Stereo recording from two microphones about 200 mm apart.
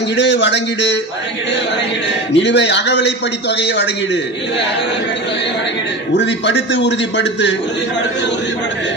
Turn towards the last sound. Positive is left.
turn(degrees=60)  # may be behind; listen again after turning